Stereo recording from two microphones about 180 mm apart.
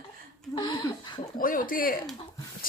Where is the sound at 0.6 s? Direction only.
25° left (ahead or behind).